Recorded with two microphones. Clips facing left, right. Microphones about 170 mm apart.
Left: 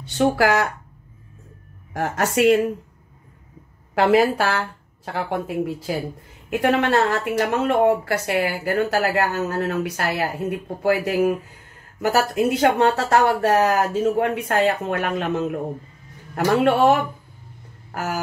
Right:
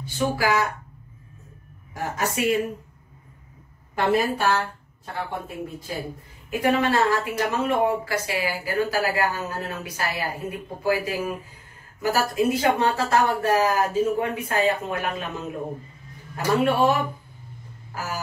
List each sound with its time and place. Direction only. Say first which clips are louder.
0.0 s speech: left 6 dB; 75° left (ahead or behind)
2.0 s speech: left 6 dB; 70° left (ahead or behind)
3.9 s speech: left 5 dB; 90° left
6.5 s speech: left 3 dB; 70° left (ahead or behind)
17.9 s speech: left 5 dB; 65° left (ahead or behind)